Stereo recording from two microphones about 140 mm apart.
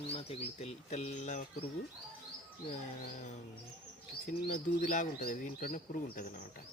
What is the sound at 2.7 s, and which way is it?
Bird, 60° left (ahead or behind).